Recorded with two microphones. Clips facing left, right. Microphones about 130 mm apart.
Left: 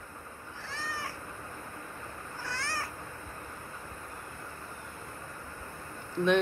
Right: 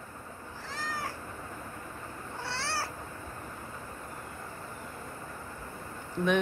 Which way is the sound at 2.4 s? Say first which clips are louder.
Right 2 dB; 30° right (ahead or behind).